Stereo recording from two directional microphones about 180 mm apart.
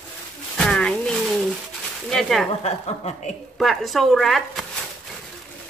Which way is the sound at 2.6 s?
35° left (ahead or behind).